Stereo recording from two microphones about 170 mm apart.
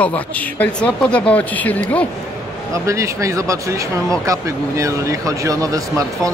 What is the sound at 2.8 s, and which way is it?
Speech, 20° right (ahead or behind).